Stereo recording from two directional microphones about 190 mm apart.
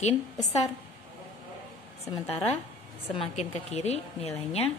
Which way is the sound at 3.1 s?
35° left (ahead or behind).